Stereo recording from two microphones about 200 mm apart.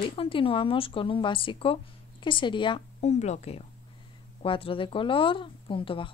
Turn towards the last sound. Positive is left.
turn(degrees=25)  # may be behind; listen again after turning